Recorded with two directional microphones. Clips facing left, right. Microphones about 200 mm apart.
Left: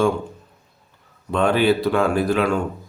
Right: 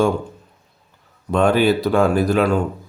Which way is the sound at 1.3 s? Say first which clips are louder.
Right 2 dB; 45° right (ahead or behind).